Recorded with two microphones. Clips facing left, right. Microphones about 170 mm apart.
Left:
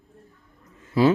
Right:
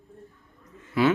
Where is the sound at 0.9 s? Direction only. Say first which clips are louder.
Left 3 dB; 35° left (ahead or behind).